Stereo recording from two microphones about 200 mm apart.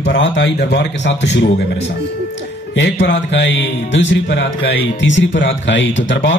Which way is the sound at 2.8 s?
60° left (ahead or behind).